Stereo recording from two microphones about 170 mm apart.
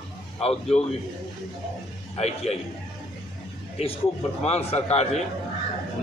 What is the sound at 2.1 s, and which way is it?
Speech, 40° left (ahead or behind).